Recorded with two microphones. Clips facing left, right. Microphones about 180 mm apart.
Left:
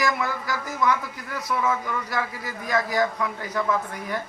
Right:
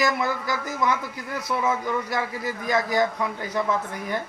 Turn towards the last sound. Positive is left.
turn(degrees=-25)  # may be behind; listen again after turning